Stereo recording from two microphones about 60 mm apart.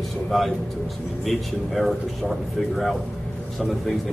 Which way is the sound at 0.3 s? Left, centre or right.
Centre.